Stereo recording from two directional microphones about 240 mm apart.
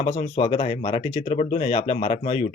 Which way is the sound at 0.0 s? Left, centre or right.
Left.